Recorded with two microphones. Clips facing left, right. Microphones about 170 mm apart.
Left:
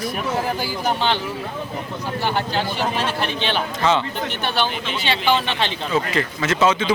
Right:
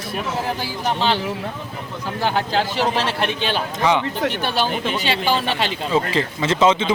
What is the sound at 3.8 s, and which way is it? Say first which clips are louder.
Speech: right 1 dB; 15° right (ahead or behind).